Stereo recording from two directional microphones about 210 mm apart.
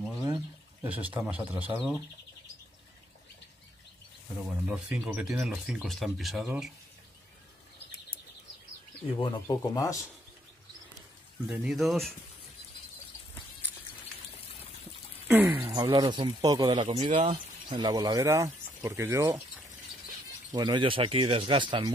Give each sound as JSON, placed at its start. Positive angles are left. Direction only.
{"t": 0.8, "sound": "speech", "side_deg": -5}
{"t": 4.4, "sound": "speech", "side_deg": -5}
{"t": 9.2, "sound": "speech", "side_deg": 20}
{"t": 11.4, "sound": "speech", "side_deg": -5}
{"t": 15.2, "sound": "a sound", "side_deg": -5}
{"t": 15.7, "sound": "speech", "side_deg": -20}
{"t": 17.0, "sound": "speech", "side_deg": -35}
{"t": 17.3, "sound": "speech", "side_deg": -20}
{"t": 20.5, "sound": "speech", "side_deg": -20}